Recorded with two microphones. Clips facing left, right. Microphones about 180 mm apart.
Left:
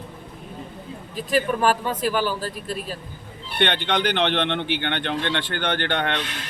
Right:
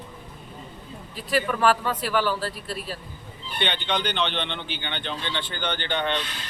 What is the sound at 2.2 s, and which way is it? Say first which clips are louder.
Speech: left 1 dB; 15° left (ahead or behind).